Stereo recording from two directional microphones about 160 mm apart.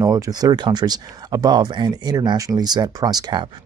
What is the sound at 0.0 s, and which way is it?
Speech, 25° right (ahead or behind).